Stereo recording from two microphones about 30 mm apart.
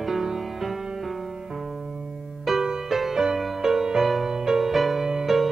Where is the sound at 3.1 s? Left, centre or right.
Centre.